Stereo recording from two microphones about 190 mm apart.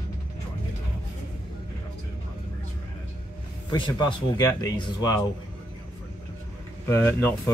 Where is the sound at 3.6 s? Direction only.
25° left (ahead or behind).